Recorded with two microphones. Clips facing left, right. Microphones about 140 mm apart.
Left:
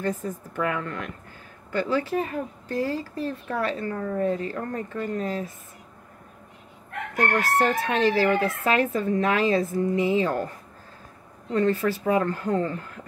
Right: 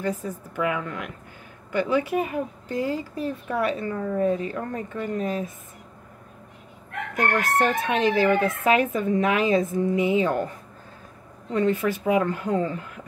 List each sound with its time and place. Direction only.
0.0 s speech: 10° right (ahead or behind)
7.2 s speech: 20° right (ahead or behind)
11.5 s speech: 15° right (ahead or behind)